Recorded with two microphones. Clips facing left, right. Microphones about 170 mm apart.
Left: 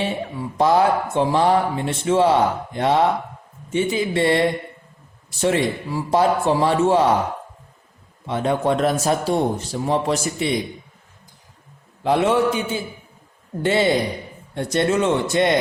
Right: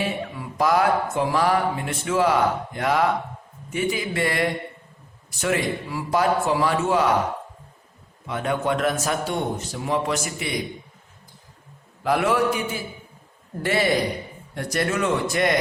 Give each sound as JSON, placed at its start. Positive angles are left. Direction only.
{"t": 0.0, "sound": "speech", "side_deg": 30}
{"t": 8.3, "sound": "a man's voice", "side_deg": 30}
{"t": 12.0, "sound": "speech", "side_deg": 25}